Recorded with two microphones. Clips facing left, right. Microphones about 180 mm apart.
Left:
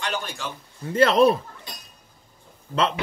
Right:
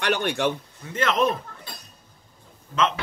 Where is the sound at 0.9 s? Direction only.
35° left (ahead or behind).